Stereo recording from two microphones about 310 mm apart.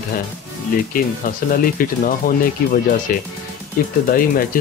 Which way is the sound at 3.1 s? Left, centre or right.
Left.